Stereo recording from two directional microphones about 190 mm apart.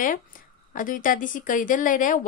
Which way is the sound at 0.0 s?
45° left (ahead or behind).